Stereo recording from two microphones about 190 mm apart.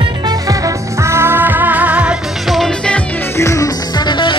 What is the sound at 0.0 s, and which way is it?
Music, 20° right (ahead or behind).